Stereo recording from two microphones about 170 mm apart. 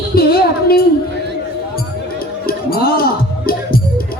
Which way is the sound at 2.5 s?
60° left (ahead or behind).